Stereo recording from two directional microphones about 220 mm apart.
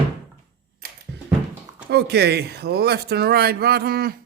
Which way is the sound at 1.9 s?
50° right (ahead or behind).